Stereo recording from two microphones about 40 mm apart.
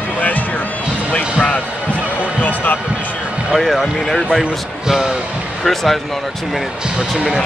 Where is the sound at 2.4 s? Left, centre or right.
Left.